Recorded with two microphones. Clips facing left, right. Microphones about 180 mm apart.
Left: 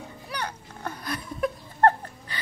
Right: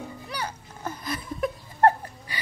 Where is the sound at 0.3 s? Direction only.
5° right (ahead or behind).